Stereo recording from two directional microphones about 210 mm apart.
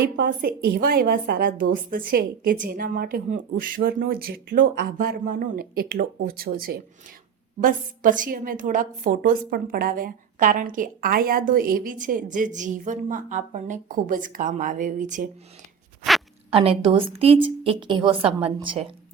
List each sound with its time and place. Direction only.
0.2 s a woman's voice: 50° right (ahead or behind)
16.5 s a woman's voice: 25° right (ahead or behind)